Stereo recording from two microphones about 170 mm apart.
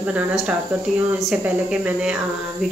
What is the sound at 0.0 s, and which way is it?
Speech, 5° right (ahead or behind).